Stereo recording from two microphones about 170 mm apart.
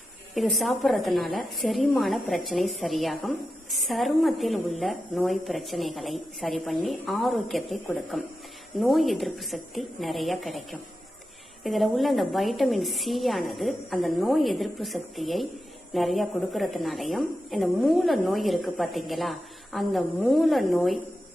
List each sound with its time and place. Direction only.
0.3 s a woman's voice: centre (ahead or behind)